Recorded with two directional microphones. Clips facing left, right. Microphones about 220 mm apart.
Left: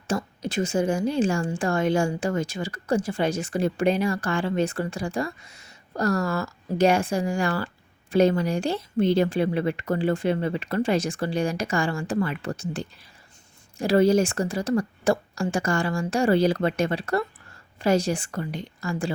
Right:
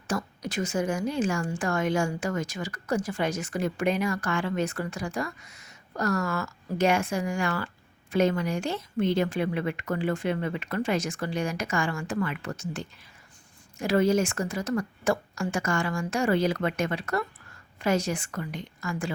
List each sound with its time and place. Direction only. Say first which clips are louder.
0.1 s a woman's voice: left 3 dB; 25° left (ahead or behind)